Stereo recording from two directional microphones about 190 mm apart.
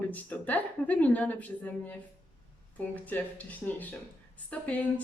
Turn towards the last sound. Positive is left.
turn(degrees=10)  # may be behind; listen again after turning